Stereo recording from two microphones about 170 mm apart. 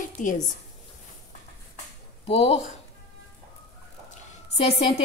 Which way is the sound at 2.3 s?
35° left (ahead or behind).